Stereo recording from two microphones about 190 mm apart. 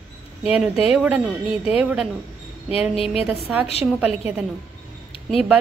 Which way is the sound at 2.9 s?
30° left (ahead or behind).